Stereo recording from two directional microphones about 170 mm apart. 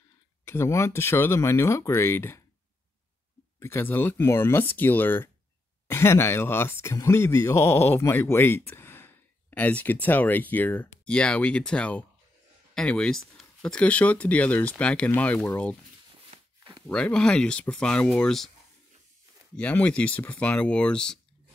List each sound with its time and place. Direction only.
0.5 s speech: 15° left (ahead or behind)
3.5 s speech: 15° left (ahead or behind)
16.5 s a sound: 30° right (ahead or behind)
16.8 s speech: 5° left (ahead or behind)
19.5 s speech: 10° left (ahead or behind)